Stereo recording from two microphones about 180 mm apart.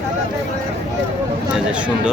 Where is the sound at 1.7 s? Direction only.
5° right (ahead or behind).